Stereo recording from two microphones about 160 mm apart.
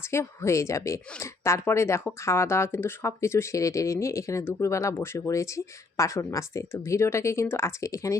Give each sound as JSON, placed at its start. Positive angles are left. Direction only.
{"t": 0.1, "sound": "speech", "side_deg": 15}